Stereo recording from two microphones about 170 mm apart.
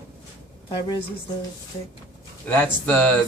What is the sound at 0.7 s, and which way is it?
Speech, 25° left (ahead or behind).